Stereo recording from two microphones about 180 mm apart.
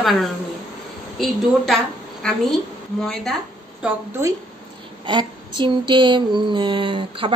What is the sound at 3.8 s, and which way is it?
Speech, 15° right (ahead or behind).